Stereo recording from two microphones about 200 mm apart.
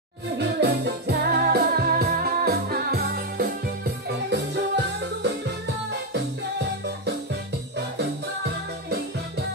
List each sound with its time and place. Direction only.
0.4 s music: 55° right (ahead or behind)